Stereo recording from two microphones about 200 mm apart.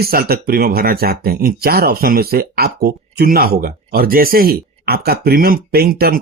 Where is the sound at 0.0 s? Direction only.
50° right (ahead or behind).